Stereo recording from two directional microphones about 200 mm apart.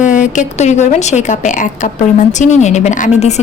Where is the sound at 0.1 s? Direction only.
40° left (ahead or behind).